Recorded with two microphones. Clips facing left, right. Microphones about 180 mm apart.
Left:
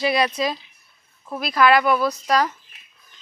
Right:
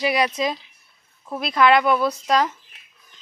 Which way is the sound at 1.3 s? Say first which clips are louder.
Even; 25° right (ahead or behind).